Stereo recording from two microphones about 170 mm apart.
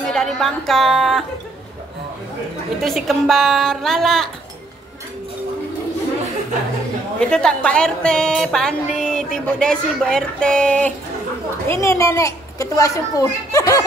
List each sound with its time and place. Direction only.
0.0 s a woman's voice: centre (ahead or behind)
2.8 s a woman's voice: centre (ahead or behind)
7.2 s a woman's voice: 5° left (ahead or behind)